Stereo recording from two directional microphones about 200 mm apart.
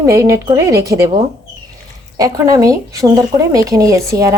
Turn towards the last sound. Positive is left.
turn(degrees=-15)  # may be behind; listen again after turning